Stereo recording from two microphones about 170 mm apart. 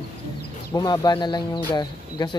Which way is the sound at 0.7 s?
25° left (ahead or behind).